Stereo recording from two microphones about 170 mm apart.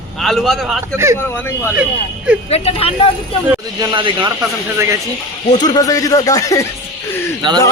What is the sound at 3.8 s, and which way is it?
Speech, 25° right (ahead or behind).